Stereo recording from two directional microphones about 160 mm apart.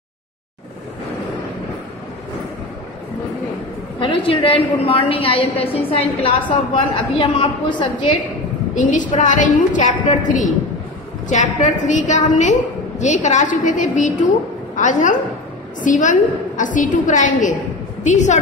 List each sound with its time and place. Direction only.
4.0 s a woman's voice: 35° left (ahead or behind)
8.7 s a woman's voice: 50° left (ahead or behind)